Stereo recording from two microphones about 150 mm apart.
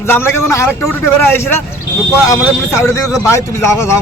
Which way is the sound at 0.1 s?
15° left (ahead or behind).